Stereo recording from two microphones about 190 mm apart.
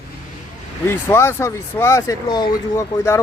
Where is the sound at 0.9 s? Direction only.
15° left (ahead or behind).